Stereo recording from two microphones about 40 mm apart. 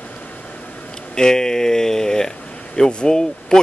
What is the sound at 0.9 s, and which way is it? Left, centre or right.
Speech, centre.